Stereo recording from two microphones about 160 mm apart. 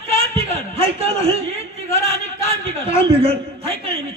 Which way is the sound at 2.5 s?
35° right (ahead or behind).